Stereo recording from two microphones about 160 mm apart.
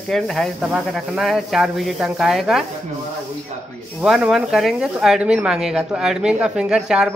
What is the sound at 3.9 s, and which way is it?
Speech, 5° right (ahead or behind).